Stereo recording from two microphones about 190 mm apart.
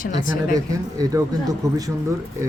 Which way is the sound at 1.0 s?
20° right (ahead or behind).